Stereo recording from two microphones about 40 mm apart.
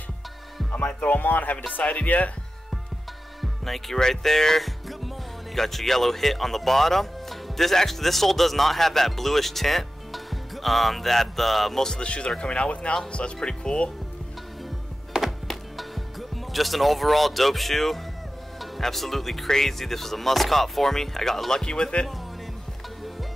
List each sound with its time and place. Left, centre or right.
0.7 s speech: left
3.3 s speech: centre
12.0 s speech: left
15.1 s music: centre
18.6 s speech: centre